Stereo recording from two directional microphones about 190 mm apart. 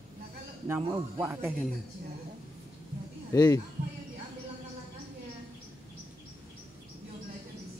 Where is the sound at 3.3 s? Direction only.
20° left (ahead or behind).